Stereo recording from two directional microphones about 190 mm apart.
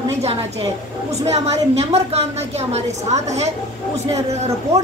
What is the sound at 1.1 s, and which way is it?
A woman's voice, 35° right (ahead or behind).